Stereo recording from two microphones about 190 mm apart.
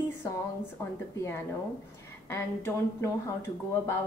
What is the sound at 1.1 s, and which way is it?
A woman's voice, 15° left (ahead or behind).